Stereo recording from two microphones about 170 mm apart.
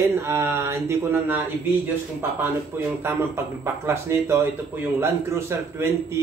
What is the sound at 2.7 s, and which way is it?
Speech, 15° right (ahead or behind).